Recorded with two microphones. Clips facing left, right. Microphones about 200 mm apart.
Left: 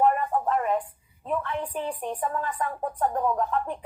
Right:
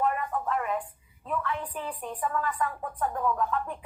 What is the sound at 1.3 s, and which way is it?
A woman's voice, 25° left (ahead or behind).